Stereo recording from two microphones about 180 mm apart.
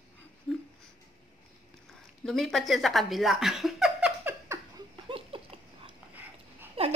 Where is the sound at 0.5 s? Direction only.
5° left (ahead or behind).